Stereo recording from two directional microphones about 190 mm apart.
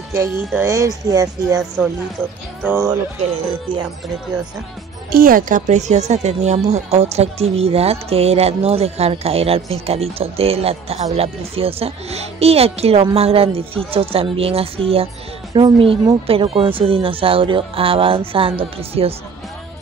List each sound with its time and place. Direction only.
0.5 s speech: 15° right (ahead or behind)
2.6 s speech: 15° right (ahead or behind)
5.1 s a woman's voice: 50° right (ahead or behind); by 19.1 s 30° right (ahead or behind)